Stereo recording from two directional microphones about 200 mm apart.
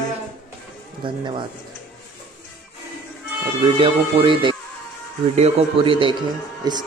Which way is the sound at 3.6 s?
25° right (ahead or behind).